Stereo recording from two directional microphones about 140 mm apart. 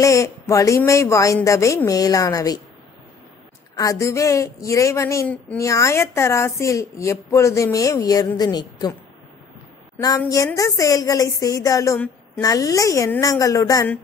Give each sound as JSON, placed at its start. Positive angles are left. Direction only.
{"t": 0.0, "sound": "a woman's voice", "side_deg": 20}
{"t": 3.7, "sound": "a woman's voice", "side_deg": 25}
{"t": 9.9, "sound": "a woman's voice", "side_deg": 25}